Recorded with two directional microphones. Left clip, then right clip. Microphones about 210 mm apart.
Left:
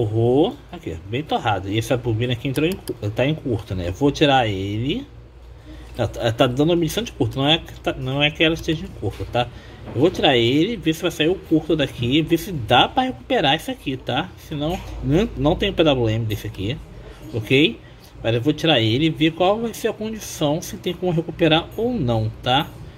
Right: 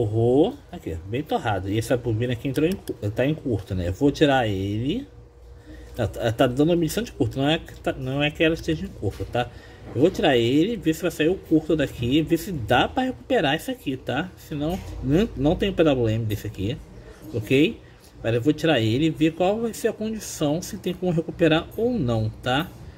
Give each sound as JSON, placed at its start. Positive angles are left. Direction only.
{"t": 0.0, "sound": "speech", "side_deg": -10}